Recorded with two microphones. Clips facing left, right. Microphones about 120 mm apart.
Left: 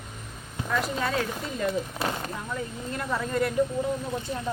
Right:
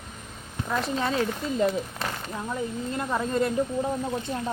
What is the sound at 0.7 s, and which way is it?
Speech, 25° right (ahead or behind).